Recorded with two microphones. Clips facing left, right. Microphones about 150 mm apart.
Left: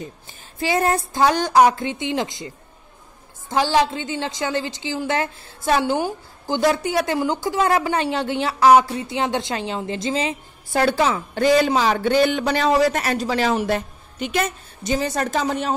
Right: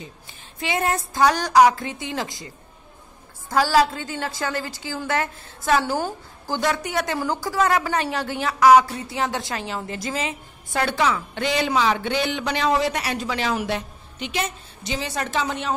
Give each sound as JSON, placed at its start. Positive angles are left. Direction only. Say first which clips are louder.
{"t": 0.6, "sound": "a woman's voice", "louder": "left 4 dB", "side_deg": 35}
{"t": 1.1, "sound": "a woman's voice", "louder": "even", "side_deg": 25}
{"t": 13.7, "sound": "a woman's voice", "louder": "left 4 dB", "side_deg": 45}